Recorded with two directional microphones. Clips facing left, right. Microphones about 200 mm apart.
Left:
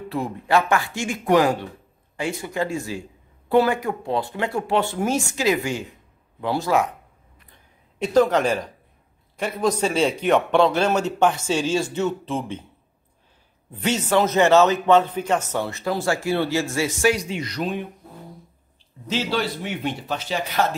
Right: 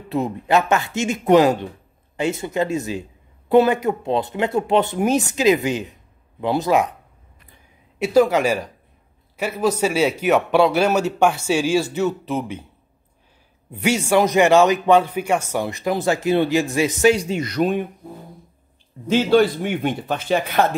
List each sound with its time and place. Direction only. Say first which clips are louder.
0.1 s speech: right 3 dB; 20° right (ahead or behind)
8.0 s a man's voice: right 2 dB; 10° right (ahead or behind)
13.7 s a man's voice: right 3 dB; 10° right (ahead or behind)
17.3 s a man's voice: right 6 dB; 50° right (ahead or behind)
19.0 s a man's voice: right 9 dB; 50° right (ahead or behind)